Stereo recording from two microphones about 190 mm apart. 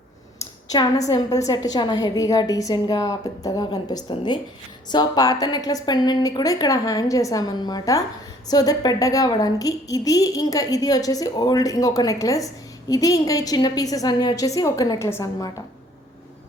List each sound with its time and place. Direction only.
0.7 s a woman's voice: 20° left (ahead or behind)